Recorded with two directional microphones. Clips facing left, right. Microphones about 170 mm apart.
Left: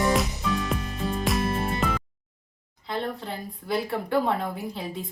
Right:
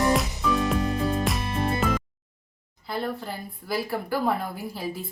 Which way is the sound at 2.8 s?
5° right (ahead or behind).